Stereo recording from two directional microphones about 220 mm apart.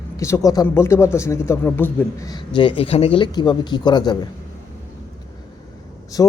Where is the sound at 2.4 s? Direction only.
20° left (ahead or behind).